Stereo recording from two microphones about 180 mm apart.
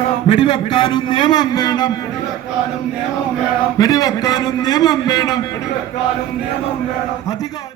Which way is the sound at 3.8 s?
20° left (ahead or behind).